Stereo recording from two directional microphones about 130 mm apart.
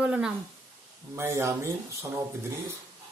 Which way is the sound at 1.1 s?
20° right (ahead or behind).